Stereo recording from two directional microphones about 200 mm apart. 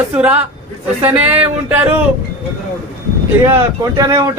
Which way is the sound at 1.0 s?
10° right (ahead or behind).